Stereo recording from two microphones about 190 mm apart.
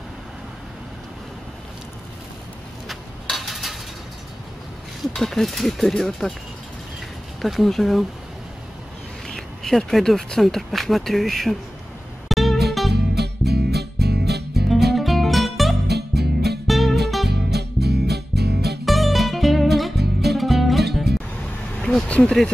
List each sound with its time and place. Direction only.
2.9 s a sound: centre (ahead or behind)
5.0 s speech: centre (ahead or behind)
7.4 s speech: centre (ahead or behind)
9.3 s speech: centre (ahead or behind)
12.3 s music: centre (ahead or behind)
12.9 s music: 60° right (ahead or behind)
15.0 s music: centre (ahead or behind)
15.9 s music: 60° right (ahead or behind)
16.6 s music: centre (ahead or behind)
17.3 s music: 60° right (ahead or behind)
18.9 s music: centre (ahead or behind)
20.0 s music: 60° right (ahead or behind)
20.3 s music: centre (ahead or behind)
21.8 s vehicle: 5° left (ahead or behind)